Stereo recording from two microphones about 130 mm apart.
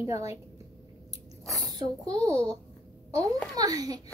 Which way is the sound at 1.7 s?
30° right (ahead or behind).